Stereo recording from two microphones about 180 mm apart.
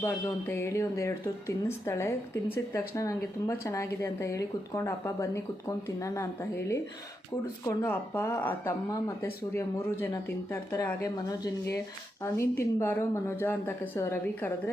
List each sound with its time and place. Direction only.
0.0 s speech: 15° left (ahead or behind)